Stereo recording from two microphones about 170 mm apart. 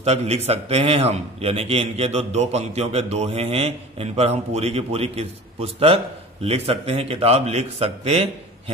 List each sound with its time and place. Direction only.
0.0 s a man's voice: 40° right (ahead or behind)